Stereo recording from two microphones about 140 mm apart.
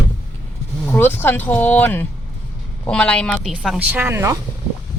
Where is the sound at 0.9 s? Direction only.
15° left (ahead or behind).